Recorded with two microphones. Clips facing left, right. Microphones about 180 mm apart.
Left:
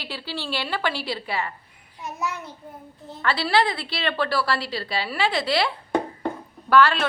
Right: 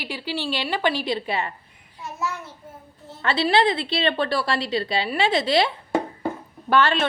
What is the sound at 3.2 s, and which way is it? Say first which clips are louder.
A woman's voice: right 2 dB; 20° right (ahead or behind).